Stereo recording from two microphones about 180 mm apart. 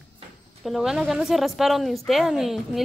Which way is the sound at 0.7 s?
Centre (ahead or behind).